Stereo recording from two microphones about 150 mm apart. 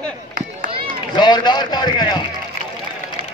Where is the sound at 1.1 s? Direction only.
30° left (ahead or behind).